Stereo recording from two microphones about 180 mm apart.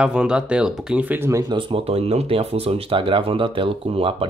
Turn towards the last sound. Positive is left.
turn(degrees=-30)  # may be behind; listen again after turning